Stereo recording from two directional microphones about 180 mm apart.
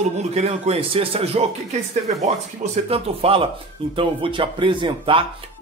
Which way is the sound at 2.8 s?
35° right (ahead or behind).